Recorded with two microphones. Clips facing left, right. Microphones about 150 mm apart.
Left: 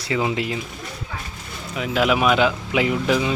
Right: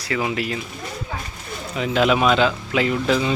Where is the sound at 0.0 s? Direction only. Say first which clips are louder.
Left 1 dB; 25° left (ahead or behind).